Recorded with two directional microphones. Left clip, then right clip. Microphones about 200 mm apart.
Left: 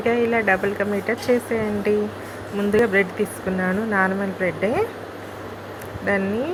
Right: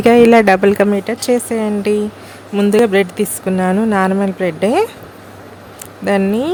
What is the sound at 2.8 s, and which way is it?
Speech, 50° right (ahead or behind).